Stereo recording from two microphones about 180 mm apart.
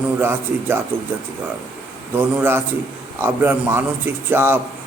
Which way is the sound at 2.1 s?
10° right (ahead or behind).